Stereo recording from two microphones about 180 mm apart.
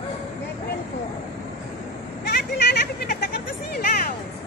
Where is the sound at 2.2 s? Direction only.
60° left (ahead or behind).